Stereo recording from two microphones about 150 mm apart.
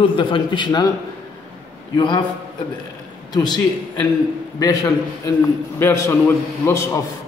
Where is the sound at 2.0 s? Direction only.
30° left (ahead or behind).